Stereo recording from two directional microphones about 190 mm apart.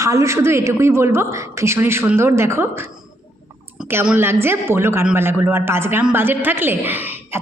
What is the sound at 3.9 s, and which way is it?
A woman's voice, 10° right (ahead or behind).